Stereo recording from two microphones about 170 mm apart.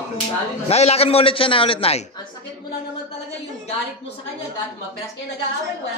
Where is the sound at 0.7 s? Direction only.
35° left (ahead or behind).